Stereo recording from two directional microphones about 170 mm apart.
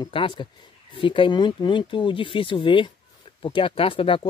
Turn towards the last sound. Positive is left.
turn(degrees=30)  # may be behind; listen again after turning